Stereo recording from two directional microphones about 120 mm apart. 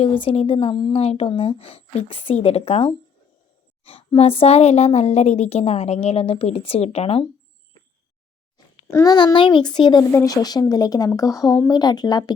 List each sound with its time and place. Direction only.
0.2 s a woman's voice: 50° left (ahead or behind)
8.9 s a child's voice: 25° left (ahead or behind)
9.1 s speech: 40° left (ahead or behind)
10.1 s speech: 30° left (ahead or behind)